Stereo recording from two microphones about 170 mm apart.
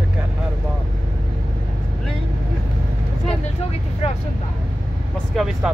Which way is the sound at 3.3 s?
35° left (ahead or behind).